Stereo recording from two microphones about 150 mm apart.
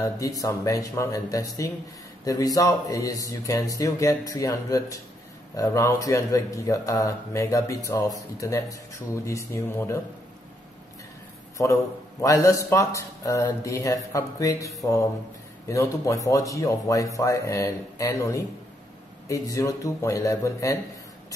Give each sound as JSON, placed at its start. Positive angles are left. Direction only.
{"t": 0.4, "sound": "speech", "side_deg": 20}
{"t": 11.5, "sound": "speech", "side_deg": 20}